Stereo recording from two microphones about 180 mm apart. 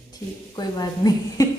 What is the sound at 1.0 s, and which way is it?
Speech, 25° left (ahead or behind).